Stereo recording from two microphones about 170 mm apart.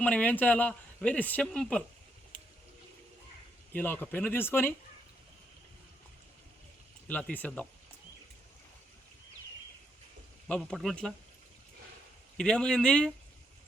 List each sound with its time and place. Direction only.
0.0 s speech: 5° left (ahead or behind)
3.7 s speech: 10° left (ahead or behind)
7.1 s speech: 10° left (ahead or behind)
10.5 s speech: 5° left (ahead or behind)
12.4 s speech: 5° left (ahead or behind)